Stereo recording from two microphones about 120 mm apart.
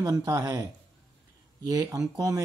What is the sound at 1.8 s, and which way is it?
Speech, 30° right (ahead or behind).